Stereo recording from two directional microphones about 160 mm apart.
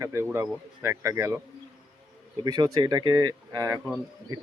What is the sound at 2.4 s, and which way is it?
Speech, 25° right (ahead or behind).